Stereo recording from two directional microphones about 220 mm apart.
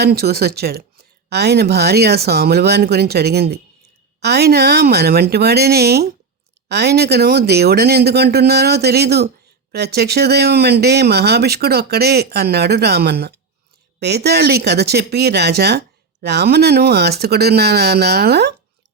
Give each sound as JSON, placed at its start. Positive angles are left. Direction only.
{"t": 0.0, "sound": "a woman's voice", "side_deg": -45}